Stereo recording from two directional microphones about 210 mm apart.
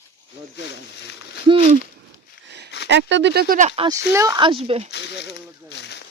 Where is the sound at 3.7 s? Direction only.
25° right (ahead or behind).